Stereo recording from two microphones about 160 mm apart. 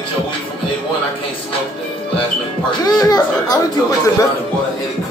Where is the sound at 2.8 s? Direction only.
25° left (ahead or behind).